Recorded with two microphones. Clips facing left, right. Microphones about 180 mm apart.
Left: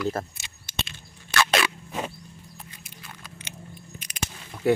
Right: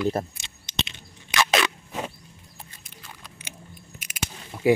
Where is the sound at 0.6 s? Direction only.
20° right (ahead or behind).